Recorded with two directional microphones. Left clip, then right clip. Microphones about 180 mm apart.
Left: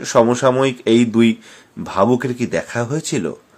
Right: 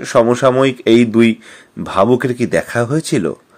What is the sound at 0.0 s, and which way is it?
Speech, 20° right (ahead or behind).